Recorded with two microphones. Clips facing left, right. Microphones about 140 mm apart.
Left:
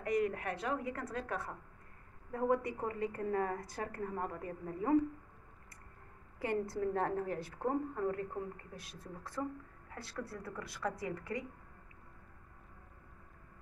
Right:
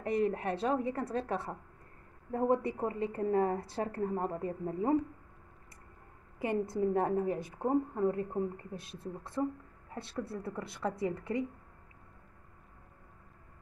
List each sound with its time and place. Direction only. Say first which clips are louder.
0.0 s a woman's voice: right 3 dB; 30° right (ahead or behind)
6.4 s a woman's voice: right 4 dB; 20° right (ahead or behind)